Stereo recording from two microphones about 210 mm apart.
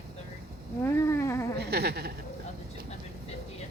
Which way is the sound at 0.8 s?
10° left (ahead or behind).